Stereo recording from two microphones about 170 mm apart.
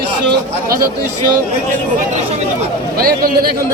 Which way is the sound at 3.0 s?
60° right (ahead or behind).